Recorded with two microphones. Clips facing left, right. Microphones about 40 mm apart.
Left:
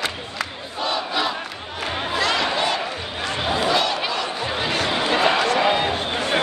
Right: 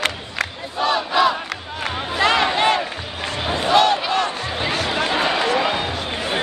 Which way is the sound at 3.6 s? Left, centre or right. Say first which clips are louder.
Right 6 dB; right.